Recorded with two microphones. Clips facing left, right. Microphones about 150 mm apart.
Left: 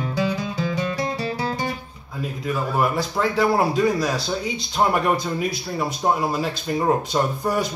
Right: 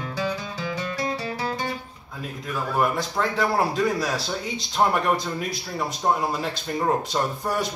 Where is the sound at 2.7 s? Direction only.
5° left (ahead or behind).